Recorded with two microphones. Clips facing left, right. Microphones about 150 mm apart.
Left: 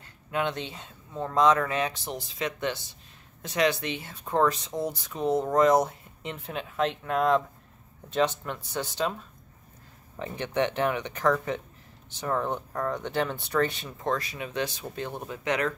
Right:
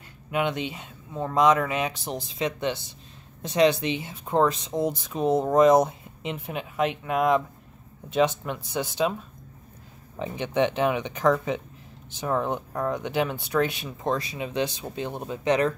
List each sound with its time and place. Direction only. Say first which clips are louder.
0.3 s speech: right 3 dB; 15° right (ahead or behind)
10.1 s speech: right 3 dB; 15° right (ahead or behind)